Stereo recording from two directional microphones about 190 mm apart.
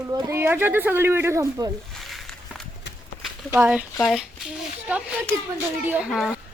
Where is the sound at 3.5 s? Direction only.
10° right (ahead or behind).